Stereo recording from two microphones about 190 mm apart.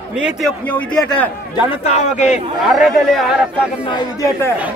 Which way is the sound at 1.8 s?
35° left (ahead or behind).